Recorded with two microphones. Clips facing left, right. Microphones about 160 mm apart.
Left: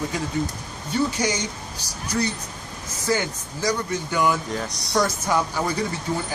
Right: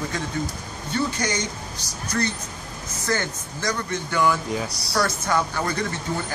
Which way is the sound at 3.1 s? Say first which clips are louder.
Left 2 dB; 10° left (ahead or behind).